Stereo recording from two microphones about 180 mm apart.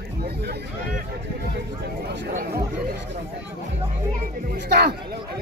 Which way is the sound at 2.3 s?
60° right (ahead or behind).